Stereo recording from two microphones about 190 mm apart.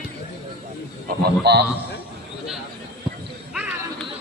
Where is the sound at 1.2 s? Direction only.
60° right (ahead or behind).